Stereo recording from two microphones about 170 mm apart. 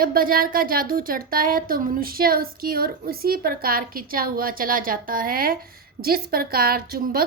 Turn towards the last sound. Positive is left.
turn(degrees=-60)  # may be behind; listen again after turning